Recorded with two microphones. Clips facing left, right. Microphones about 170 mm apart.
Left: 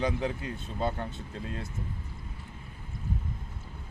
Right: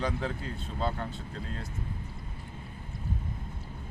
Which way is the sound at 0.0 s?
15° left (ahead or behind).